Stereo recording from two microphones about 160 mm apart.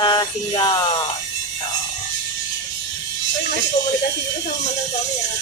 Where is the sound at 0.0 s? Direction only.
25° left (ahead or behind).